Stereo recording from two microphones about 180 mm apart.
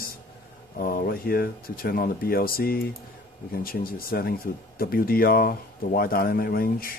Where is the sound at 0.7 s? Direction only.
55° left (ahead or behind).